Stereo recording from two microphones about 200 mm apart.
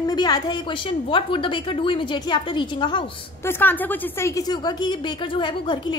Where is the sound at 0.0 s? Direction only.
20° left (ahead or behind).